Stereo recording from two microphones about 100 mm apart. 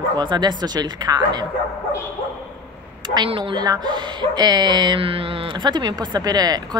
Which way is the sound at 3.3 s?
60° right (ahead or behind).